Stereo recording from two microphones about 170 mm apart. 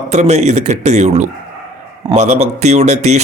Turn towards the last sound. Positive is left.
turn(degrees=-40)  # may be behind; listen again after turning